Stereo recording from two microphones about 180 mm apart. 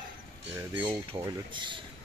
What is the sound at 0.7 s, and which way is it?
Speech, 25° right (ahead or behind).